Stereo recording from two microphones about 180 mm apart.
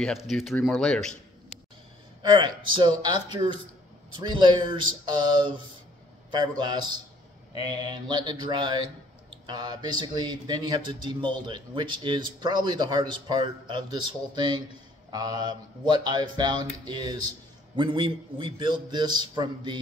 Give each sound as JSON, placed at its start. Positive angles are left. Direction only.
{"t": 0.0, "sound": "speech", "side_deg": 0}
{"t": 2.2, "sound": "a man's voice", "side_deg": -25}